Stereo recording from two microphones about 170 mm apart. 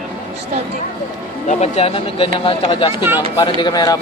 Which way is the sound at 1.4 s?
40° left (ahead or behind).